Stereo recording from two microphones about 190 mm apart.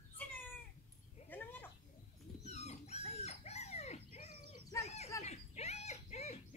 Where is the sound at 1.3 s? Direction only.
10° left (ahead or behind).